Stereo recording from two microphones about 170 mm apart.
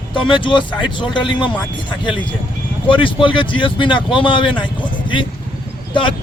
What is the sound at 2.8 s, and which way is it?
Speech, 30° left (ahead or behind).